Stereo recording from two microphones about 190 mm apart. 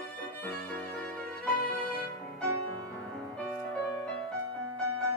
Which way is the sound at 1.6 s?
50° left (ahead or behind).